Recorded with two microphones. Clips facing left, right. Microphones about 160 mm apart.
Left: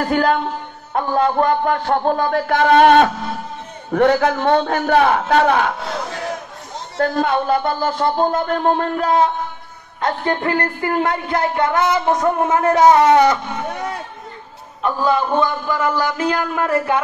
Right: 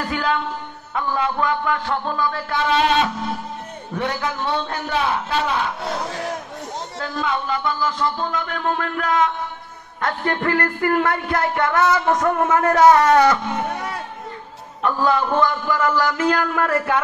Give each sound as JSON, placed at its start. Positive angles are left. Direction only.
{"t": 0.0, "sound": "speech", "side_deg": 45}
{"t": 3.9, "sound": "a man's voice", "side_deg": 70}
{"t": 7.0, "sound": "speech", "side_deg": 50}
{"t": 14.8, "sound": "a man's voice", "side_deg": 15}